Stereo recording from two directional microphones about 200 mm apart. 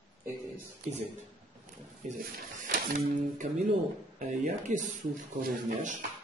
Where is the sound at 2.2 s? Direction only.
50° right (ahead or behind).